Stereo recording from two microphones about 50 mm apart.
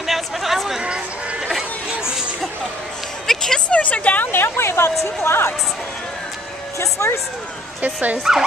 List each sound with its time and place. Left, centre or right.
0.0 s a sound: centre
1.4 s chatter: centre
3.3 s music: centre
3.6 s a sound: left
4.3 s speech: left
7.0 s speech: left
7.8 s speech: right
8.2 s speech: centre